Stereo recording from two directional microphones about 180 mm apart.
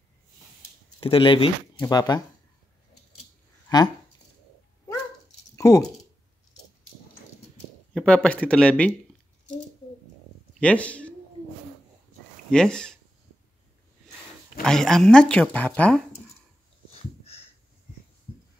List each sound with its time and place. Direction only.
1.0 s speech: 30° left (ahead or behind)
3.6 s speech: 20° left (ahead or behind)
5.6 s speech: 15° left (ahead or behind)
7.9 s speech: 5° left (ahead or behind)
10.6 s speech: 5° left (ahead or behind)
12.4 s speech: 5° left (ahead or behind)
14.6 s speech: centre (ahead or behind)
16.9 s a sound: 35° left (ahead or behind)